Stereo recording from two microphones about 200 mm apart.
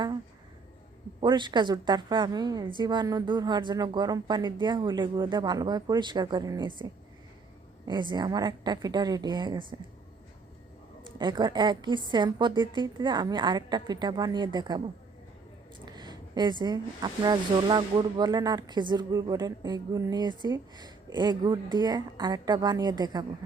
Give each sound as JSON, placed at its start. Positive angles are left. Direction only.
{"t": 1.2, "sound": "speech", "side_deg": -25}
{"t": 7.9, "sound": "speech", "side_deg": -20}
{"t": 11.2, "sound": "speech", "side_deg": -20}
{"t": 15.9, "sound": "speech", "side_deg": -20}